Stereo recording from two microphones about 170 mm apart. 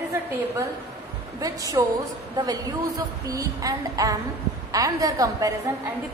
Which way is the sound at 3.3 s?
20° right (ahead or behind).